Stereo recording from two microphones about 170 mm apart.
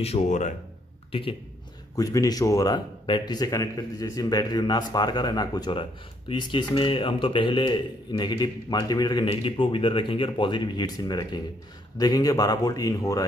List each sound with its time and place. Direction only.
0.0 s a man's voice: 40° left (ahead or behind)
2.0 s a man's voice: 20° left (ahead or behind)